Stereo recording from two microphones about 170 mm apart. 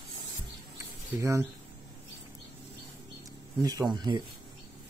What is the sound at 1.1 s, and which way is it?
Speech, 15° right (ahead or behind).